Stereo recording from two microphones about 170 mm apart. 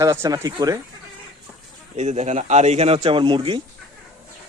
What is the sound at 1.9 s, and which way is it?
A man's voice, 40° right (ahead or behind).